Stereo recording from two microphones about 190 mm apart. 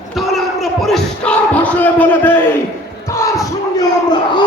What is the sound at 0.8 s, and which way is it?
Speech, 5° left (ahead or behind).